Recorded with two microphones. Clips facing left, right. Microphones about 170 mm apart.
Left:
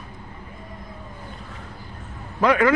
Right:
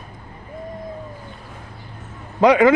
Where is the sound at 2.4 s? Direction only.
20° right (ahead or behind).